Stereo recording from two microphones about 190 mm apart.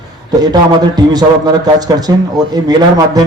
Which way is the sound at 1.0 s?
20° right (ahead or behind).